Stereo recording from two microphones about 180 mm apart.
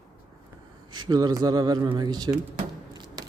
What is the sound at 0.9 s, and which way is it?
A man's voice, 25° right (ahead or behind).